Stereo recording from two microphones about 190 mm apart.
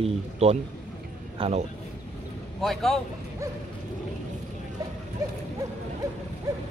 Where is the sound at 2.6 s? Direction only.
Centre (ahead or behind).